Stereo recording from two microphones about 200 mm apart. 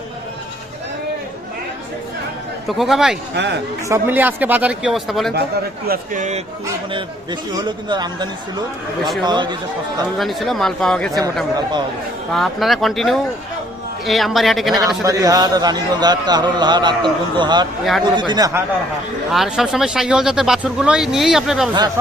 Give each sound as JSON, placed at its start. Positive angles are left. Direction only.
{"t": 2.6, "sound": "speech", "side_deg": 0}
{"t": 3.3, "sound": "speech", "side_deg": -60}
{"t": 3.8, "sound": "speech", "side_deg": -10}
{"t": 5.9, "sound": "a man's voice", "side_deg": -40}
{"t": 7.9, "sound": "a man's voice", "side_deg": -20}
{"t": 10.2, "sound": "speech", "side_deg": 0}
{"t": 12.3, "sound": "speech", "side_deg": 0}
{"t": 15.0, "sound": "a man's voice", "side_deg": -15}
{"t": 19.3, "sound": "speech", "side_deg": 0}